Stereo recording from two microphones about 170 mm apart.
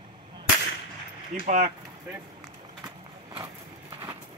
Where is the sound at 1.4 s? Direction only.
45° right (ahead or behind).